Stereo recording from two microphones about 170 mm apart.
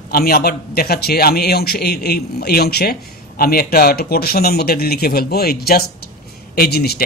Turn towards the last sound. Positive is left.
turn(degrees=70)  # may be behind; listen again after turning